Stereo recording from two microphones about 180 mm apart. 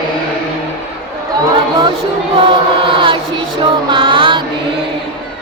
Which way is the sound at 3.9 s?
30° right (ahead or behind).